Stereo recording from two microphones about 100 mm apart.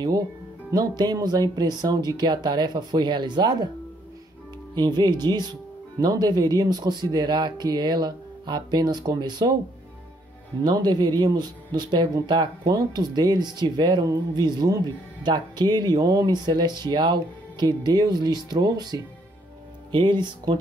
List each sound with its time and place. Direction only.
0.7 s speech: 40° right (ahead or behind)
4.7 s speech: 45° right (ahead or behind)
10.6 s speech: 45° right (ahead or behind)
19.9 s speech: 55° right (ahead or behind)